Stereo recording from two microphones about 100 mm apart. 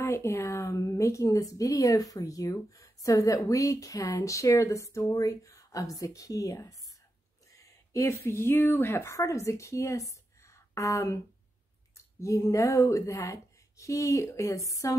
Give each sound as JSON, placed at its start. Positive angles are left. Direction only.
{"t": 0.0, "sound": "a woman's voice", "side_deg": 25}
{"t": 12.2, "sound": "a woman's voice", "side_deg": 30}